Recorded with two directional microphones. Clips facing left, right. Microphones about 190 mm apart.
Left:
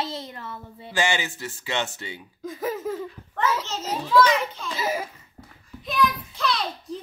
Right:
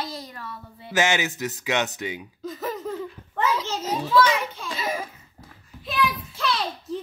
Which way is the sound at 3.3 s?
10° right (ahead or behind).